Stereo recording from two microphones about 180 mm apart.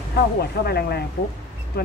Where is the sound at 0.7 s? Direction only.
65° left (ahead or behind).